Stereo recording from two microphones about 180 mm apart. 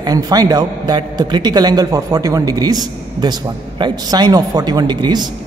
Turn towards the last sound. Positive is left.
turn(degrees=-25)  # may be behind; listen again after turning